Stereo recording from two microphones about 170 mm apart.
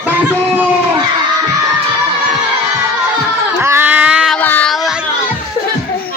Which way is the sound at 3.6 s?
15° right (ahead or behind).